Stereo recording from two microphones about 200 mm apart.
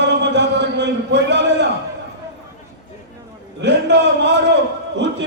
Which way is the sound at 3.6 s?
60° right (ahead or behind).